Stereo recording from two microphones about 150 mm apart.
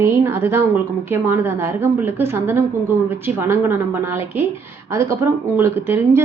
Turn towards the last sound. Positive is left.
turn(degrees=-15)  # may be behind; listen again after turning